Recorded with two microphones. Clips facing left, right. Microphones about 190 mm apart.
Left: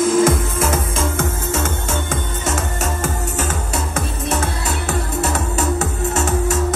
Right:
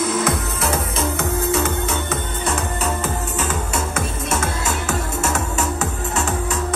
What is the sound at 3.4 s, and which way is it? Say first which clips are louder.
Music: even; 35° left (ahead or behind).